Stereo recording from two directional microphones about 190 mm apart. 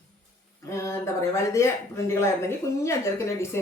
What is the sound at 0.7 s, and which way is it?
Speech, 15° left (ahead or behind).